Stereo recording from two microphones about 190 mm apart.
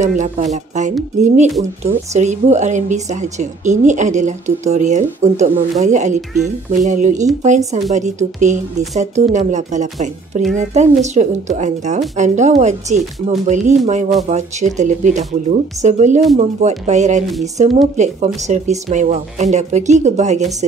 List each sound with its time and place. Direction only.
0.0 s a woman's voice: 40° right (ahead or behind)